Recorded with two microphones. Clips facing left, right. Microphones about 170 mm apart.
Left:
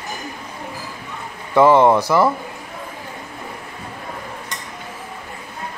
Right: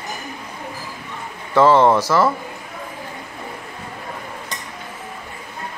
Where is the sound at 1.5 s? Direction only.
15° left (ahead or behind).